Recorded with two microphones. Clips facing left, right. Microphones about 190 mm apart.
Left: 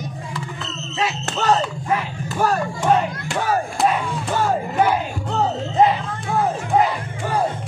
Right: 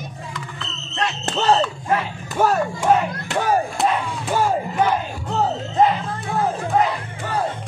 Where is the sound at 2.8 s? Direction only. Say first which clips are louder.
Left 1 dB; 10° right (ahead or behind).